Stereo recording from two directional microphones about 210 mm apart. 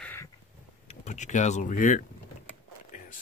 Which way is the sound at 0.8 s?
35° left (ahead or behind).